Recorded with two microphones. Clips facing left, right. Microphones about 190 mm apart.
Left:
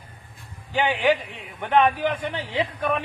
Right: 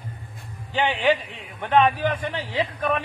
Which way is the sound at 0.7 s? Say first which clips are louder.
Even; 15° left (ahead or behind).